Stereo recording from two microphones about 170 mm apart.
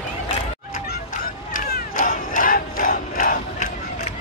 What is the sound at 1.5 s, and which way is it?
Crowd, 50° left (ahead or behind).